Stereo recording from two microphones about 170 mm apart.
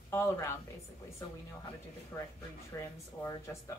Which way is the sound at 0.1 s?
15° left (ahead or behind).